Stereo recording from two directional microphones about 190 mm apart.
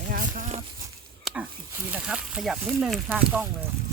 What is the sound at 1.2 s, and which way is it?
Speech, 5° right (ahead or behind).